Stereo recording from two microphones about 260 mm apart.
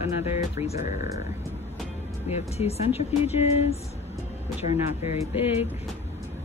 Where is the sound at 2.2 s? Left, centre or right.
Left.